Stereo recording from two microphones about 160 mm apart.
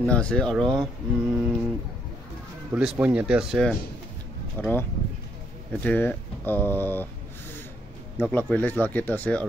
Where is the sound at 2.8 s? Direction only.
10° right (ahead or behind).